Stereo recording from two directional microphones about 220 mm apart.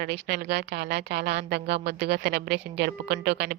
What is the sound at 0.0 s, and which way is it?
Speech, 50° right (ahead or behind).